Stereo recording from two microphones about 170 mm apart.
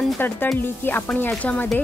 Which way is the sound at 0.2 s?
10° left (ahead or behind).